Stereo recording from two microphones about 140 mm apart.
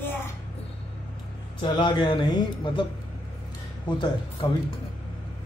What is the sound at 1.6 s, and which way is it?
A woman's voice, 35° left (ahead or behind).